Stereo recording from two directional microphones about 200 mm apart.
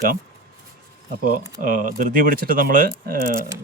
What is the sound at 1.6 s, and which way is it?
Speech, 40° right (ahead or behind).